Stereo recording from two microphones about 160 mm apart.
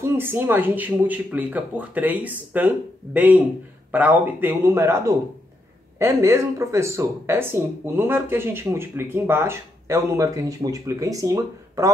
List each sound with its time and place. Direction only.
0.0 s speech: 15° right (ahead or behind)